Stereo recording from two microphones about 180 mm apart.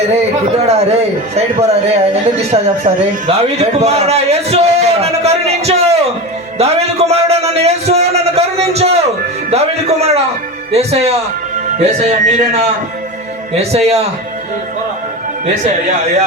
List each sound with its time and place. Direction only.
0.1 s a man's voice: 35° right (ahead or behind)